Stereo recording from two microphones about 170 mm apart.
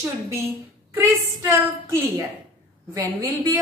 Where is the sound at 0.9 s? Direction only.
15° right (ahead or behind).